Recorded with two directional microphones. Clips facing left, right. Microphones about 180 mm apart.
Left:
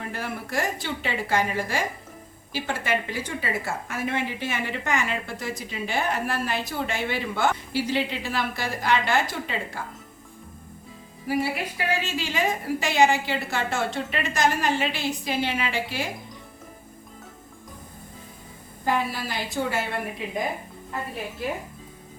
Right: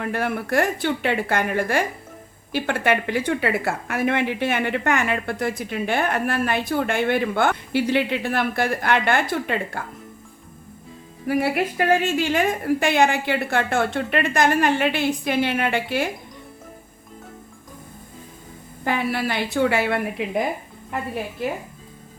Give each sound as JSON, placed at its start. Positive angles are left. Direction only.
{"t": 0.0, "sound": "speech", "side_deg": -60}
{"t": 11.3, "sound": "speech", "side_deg": -60}
{"t": 18.9, "sound": "a woman's voice", "side_deg": -65}